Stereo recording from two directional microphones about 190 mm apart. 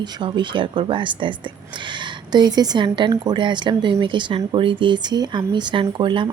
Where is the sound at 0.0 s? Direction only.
25° right (ahead or behind).